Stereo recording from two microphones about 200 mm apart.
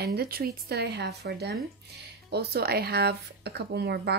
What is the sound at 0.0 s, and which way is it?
Speech, 55° right (ahead or behind).